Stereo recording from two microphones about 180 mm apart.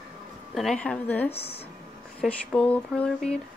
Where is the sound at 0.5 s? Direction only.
5° left (ahead or behind).